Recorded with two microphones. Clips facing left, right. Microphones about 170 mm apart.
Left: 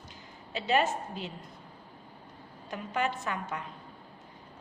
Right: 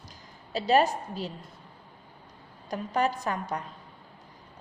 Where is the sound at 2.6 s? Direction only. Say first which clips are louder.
Right 4 dB; 40° right (ahead or behind).